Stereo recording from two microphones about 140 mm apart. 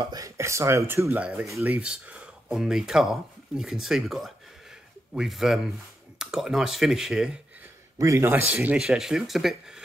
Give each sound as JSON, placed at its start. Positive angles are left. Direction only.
{"t": 0.0, "sound": "speech", "side_deg": -25}
{"t": 8.0, "sound": "speech", "side_deg": -20}
{"t": 8.5, "sound": "speech", "side_deg": -10}